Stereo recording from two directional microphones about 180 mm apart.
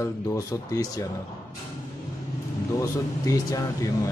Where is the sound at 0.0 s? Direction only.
15° left (ahead or behind).